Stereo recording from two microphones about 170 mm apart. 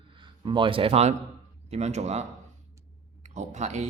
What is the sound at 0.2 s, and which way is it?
Speech, 30° right (ahead or behind).